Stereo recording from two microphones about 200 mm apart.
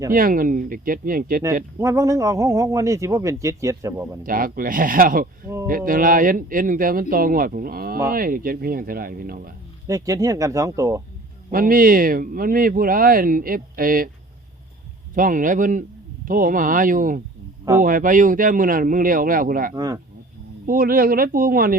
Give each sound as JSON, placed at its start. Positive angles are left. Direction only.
{"t": 0.1, "sound": "speech", "side_deg": -45}
{"t": 1.8, "sound": "a man's voice", "side_deg": -15}
{"t": 4.2, "sound": "speech", "side_deg": -45}
{"t": 9.8, "sound": "a man's voice", "side_deg": -15}
{"t": 11.5, "sound": "speech", "side_deg": -45}
{"t": 15.1, "sound": "speech", "side_deg": -45}
{"t": 19.7, "sound": "speech", "side_deg": -20}
{"t": 20.7, "sound": "speech", "side_deg": -45}